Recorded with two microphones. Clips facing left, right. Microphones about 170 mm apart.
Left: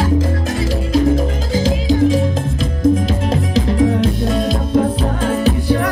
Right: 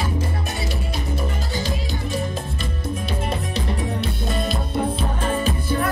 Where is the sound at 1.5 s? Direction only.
90° left.